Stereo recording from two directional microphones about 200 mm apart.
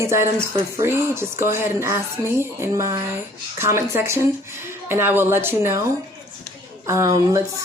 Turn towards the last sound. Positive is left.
turn(degrees=-15)  # may be behind; listen again after turning